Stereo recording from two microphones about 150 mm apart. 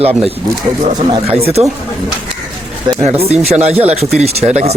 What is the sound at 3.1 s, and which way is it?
Speech, 45° right (ahead or behind).